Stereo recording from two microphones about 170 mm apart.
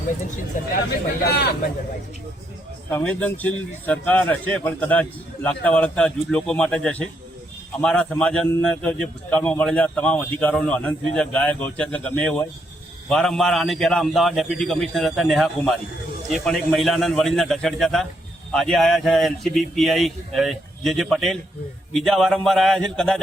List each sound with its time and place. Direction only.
0.5 s speech: 50° left (ahead or behind)
1.2 s speech: 70° left (ahead or behind)
2.9 s a man's voice: 10° left (ahead or behind)